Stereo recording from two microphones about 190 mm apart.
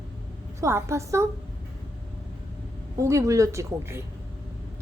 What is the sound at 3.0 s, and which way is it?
Speech, 15° right (ahead or behind).